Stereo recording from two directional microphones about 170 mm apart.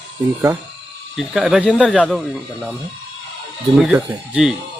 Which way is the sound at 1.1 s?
Centre (ahead or behind).